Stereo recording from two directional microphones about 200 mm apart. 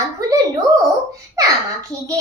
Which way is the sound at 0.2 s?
15° right (ahead or behind).